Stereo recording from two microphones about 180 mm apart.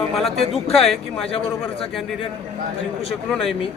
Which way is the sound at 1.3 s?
30° left (ahead or behind).